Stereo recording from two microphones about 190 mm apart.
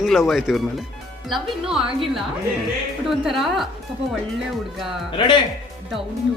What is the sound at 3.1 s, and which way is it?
Speech, centre (ahead or behind).